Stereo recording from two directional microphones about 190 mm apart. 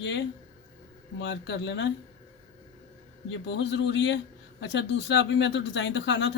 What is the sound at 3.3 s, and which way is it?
Speech, 70° left (ahead or behind).